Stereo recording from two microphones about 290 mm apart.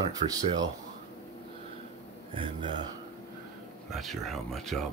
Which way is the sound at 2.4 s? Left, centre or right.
Centre.